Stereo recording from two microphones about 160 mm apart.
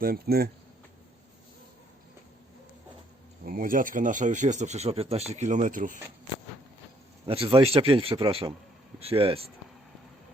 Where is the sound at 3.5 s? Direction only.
60° right (ahead or behind).